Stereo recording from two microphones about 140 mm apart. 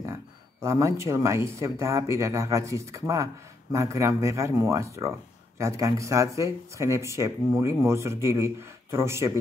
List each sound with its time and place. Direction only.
0.0 s speech: 20° right (ahead or behind)